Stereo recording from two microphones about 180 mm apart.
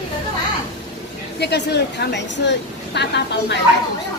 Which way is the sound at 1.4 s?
65° left (ahead or behind).